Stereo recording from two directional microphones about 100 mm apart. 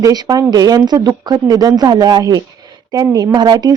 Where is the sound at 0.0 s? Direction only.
40° right (ahead or behind).